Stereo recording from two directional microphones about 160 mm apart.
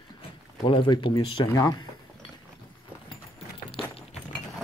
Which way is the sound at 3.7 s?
35° left (ahead or behind).